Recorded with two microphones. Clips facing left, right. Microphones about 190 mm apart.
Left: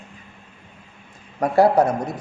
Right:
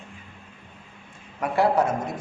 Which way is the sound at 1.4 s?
40° left (ahead or behind).